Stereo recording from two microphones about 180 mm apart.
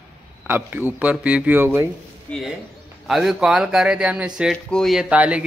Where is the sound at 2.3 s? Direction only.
5° left (ahead or behind).